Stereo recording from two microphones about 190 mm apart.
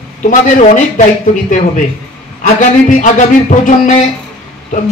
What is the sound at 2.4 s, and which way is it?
Speech, 40° left (ahead or behind).